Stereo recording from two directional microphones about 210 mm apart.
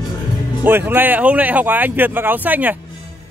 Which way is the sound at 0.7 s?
10° right (ahead or behind).